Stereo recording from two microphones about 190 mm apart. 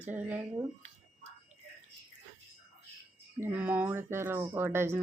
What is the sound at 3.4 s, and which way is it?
Speech, 10° right (ahead or behind).